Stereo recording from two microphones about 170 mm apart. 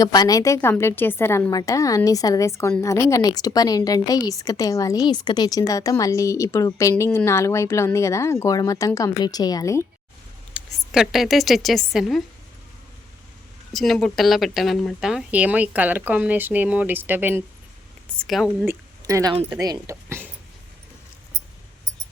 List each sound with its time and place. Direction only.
0.0 s a woman's voice: 25° left (ahead or behind)
10.5 s a woman's voice: centre (ahead or behind)
13.7 s speech: centre (ahead or behind)
18.2 s a woman's voice: centre (ahead or behind)
18.6 s speech: 15° right (ahead or behind)